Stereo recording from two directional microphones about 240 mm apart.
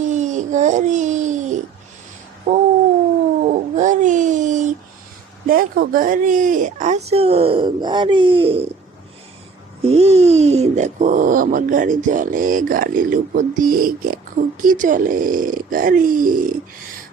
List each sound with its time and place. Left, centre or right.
0.0 s babbling: right
2.5 s cat: right
3.4 s dog: right
5.5 s speech: right
9.8 s speech: right